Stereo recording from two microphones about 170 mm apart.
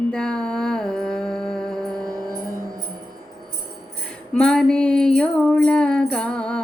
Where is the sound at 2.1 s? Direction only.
20° right (ahead or behind).